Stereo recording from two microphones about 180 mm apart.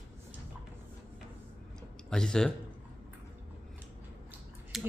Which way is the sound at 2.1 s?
5° left (ahead or behind).